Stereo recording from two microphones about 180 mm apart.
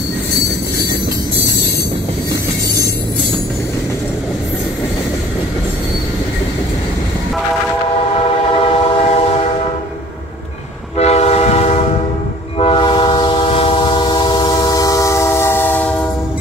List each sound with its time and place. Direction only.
8.5 s train: 30° left (ahead or behind)
11.0 s train: 35° left (ahead or behind); by 16.0 s 10° left (ahead or behind)